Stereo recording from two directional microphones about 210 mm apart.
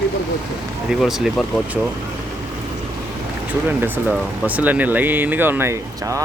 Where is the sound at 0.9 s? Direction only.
Centre (ahead or behind).